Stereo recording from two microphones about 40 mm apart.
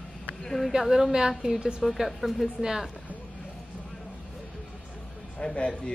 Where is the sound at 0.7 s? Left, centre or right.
Centre.